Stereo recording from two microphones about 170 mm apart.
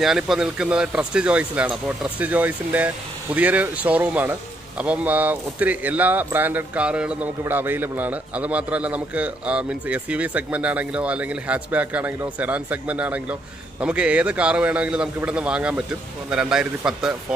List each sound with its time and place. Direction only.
0.0 s a man's voice: centre (ahead or behind)